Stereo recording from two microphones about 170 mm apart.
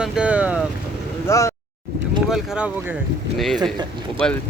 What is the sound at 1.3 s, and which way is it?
Speech, 15° left (ahead or behind).